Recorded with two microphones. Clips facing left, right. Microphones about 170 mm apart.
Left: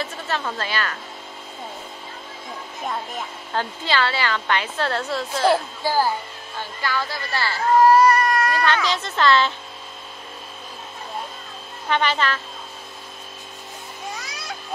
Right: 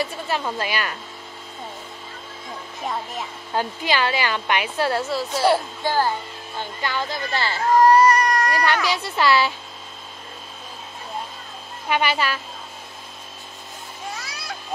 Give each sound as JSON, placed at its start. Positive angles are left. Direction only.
{"t": 0.0, "sound": "a woman's voice", "side_deg": -10}
{"t": 2.8, "sound": "speech", "side_deg": 0}
{"t": 3.5, "sound": "speech", "side_deg": -15}
{"t": 5.9, "sound": "speech", "side_deg": 10}
{"t": 6.6, "sound": "speech", "side_deg": -20}
{"t": 7.8, "sound": "a sound", "side_deg": 0}
{"t": 8.7, "sound": "speech", "side_deg": -10}
{"t": 11.9, "sound": "speech", "side_deg": -10}